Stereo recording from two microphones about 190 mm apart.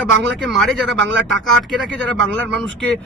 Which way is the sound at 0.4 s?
Centre (ahead or behind).